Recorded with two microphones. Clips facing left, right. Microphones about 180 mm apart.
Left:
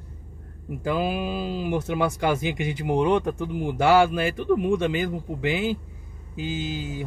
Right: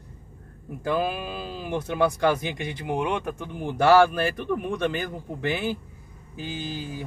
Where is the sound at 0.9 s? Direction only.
10° left (ahead or behind).